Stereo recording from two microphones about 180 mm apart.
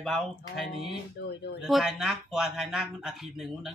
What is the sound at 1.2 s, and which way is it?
Speech, 65° left (ahead or behind).